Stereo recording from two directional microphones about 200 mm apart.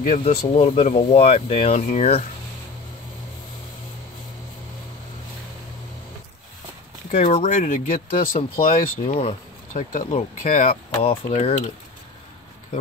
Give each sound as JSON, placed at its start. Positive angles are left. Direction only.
{"t": 0.0, "sound": "speech", "side_deg": 35}
{"t": 7.1, "sound": "speech", "side_deg": 30}